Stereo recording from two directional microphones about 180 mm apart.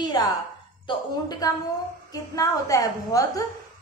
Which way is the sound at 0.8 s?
25° left (ahead or behind).